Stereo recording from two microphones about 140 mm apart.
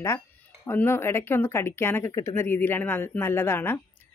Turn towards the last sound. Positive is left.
turn(degrees=15)  # may be behind; listen again after turning